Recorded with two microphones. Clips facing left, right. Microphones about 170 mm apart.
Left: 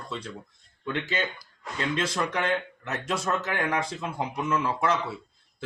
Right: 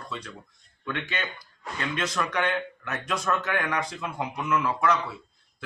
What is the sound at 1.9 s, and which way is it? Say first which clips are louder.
Speech: right 1 dB; 30° left (ahead or behind).